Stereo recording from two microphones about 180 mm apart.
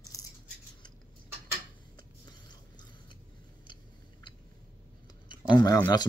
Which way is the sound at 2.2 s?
25° left (ahead or behind).